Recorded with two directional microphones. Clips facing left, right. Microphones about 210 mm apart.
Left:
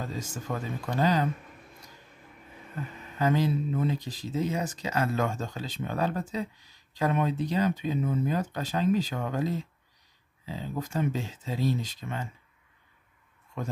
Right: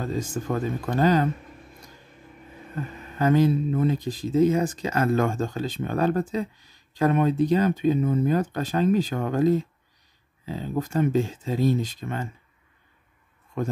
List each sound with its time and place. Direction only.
0.0 s speech: 50° right (ahead or behind)
3.2 s speech: 50° right (ahead or behind)